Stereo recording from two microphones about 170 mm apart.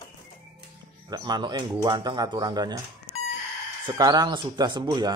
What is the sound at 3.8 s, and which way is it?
A man's voice, 25° right (ahead or behind).